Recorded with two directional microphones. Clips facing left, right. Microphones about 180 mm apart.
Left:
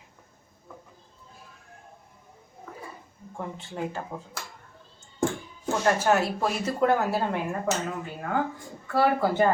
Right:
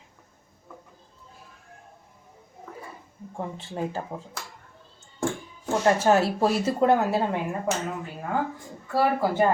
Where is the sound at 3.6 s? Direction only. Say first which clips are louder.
Right 2 dB; 30° right (ahead or behind).